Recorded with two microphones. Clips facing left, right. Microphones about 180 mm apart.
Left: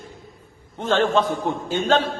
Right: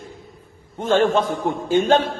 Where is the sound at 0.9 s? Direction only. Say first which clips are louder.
Right 2 dB; 45° right (ahead or behind).